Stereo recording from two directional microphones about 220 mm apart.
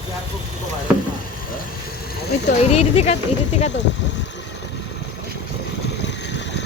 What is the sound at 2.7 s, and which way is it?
Speech, 30° left (ahead or behind).